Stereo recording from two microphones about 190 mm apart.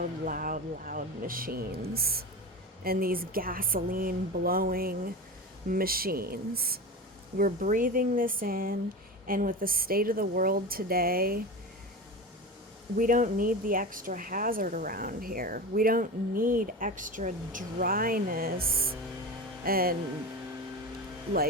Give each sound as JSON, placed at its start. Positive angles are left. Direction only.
{"t": 0.0, "sound": "speech", "side_deg": -45}
{"t": 13.0, "sound": "speech", "side_deg": -45}